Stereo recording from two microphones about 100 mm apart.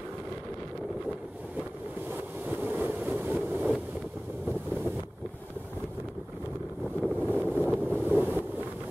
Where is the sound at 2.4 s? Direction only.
15° right (ahead or behind).